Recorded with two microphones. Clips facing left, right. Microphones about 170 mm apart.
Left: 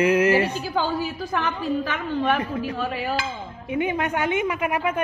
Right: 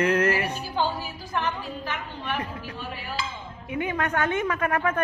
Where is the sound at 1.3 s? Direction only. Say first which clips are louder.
Left 2 dB; 90° left.